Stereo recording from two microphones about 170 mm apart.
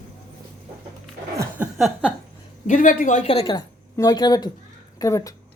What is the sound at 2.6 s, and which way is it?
Speech, 50° left (ahead or behind).